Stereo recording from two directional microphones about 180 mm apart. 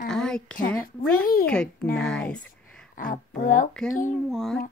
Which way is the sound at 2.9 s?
50° left (ahead or behind).